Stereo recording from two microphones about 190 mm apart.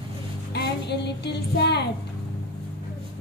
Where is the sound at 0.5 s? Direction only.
60° left (ahead or behind).